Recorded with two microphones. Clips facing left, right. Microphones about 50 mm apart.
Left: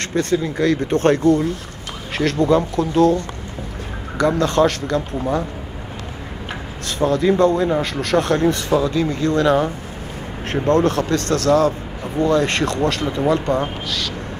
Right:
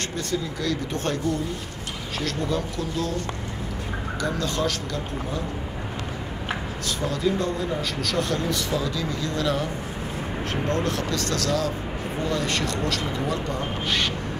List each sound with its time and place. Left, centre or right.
0.1 s speech: left
4.2 s speech: left
6.9 s speech: left
13.8 s speech: right